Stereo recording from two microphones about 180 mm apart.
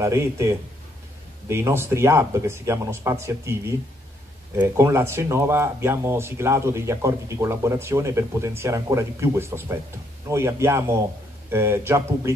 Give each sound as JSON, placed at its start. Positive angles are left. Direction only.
{"t": 0.0, "sound": "speech", "side_deg": -15}